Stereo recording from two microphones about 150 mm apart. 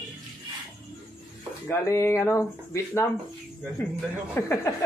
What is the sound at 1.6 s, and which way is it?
Speech, 20° left (ahead or behind).